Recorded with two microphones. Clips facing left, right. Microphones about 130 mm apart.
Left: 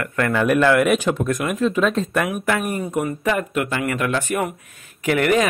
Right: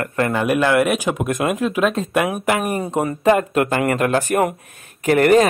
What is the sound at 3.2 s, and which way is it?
Speech, 50° right (ahead or behind).